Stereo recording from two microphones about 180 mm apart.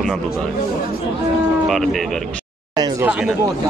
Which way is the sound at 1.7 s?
Centre (ahead or behind).